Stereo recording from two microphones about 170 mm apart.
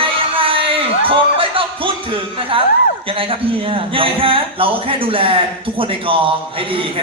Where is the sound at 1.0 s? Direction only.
30° right (ahead or behind).